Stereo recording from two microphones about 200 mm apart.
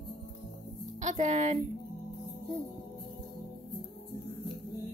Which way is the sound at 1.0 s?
35° right (ahead or behind).